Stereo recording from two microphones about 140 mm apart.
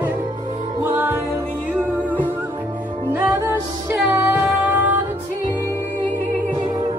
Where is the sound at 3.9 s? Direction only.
Centre (ahead or behind).